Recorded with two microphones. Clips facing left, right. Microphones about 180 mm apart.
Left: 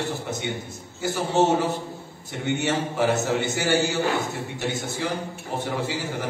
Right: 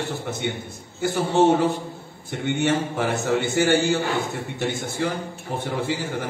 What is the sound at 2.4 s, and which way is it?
A man's voice, 50° right (ahead or behind).